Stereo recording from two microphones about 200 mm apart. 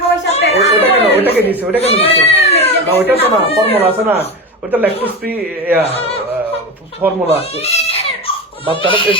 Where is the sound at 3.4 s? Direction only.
30° left (ahead or behind).